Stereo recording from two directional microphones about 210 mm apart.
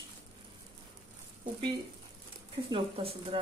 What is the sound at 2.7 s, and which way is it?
Speech, 25° right (ahead or behind).